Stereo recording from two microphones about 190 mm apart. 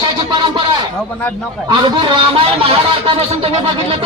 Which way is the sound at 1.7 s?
25° right (ahead or behind).